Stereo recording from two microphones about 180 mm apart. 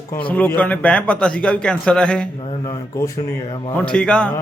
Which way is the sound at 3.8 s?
5° left (ahead or behind).